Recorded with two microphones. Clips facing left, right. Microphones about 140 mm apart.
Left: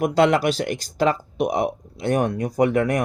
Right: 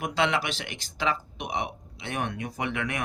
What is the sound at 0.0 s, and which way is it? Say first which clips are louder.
Speech: left 9 dB; 40° left (ahead or behind).